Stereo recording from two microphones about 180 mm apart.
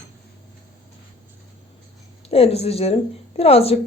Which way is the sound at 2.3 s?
35° left (ahead or behind).